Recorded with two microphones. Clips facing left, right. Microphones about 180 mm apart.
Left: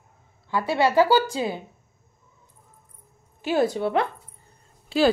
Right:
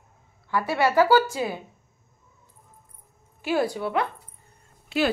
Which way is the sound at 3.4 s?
20° left (ahead or behind).